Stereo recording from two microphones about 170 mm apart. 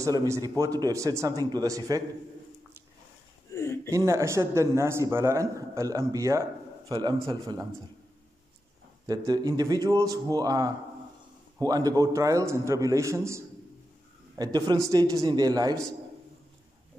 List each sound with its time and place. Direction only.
0.0 s a man's voice: 20° right (ahead or behind)
3.5 s a sound: 15° left (ahead or behind)
3.9 s a man's voice: 15° right (ahead or behind)
9.0 s a man's voice: 20° right (ahead or behind)
14.4 s a man's voice: 25° right (ahead or behind)